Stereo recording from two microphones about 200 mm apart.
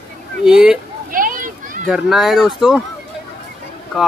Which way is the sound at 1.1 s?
45° right (ahead or behind).